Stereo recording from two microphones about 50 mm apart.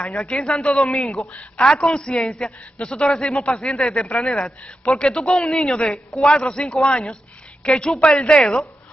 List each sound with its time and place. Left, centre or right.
0.1 s a man's voice: centre
4.9 s a man's voice: centre
5.6 s a man's voice: centre